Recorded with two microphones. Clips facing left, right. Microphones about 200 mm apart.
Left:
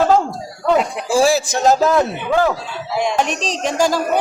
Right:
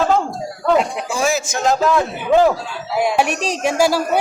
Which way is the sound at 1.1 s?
35° left (ahead or behind).